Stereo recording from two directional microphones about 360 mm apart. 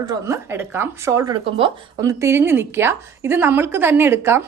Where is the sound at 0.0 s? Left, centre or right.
Centre.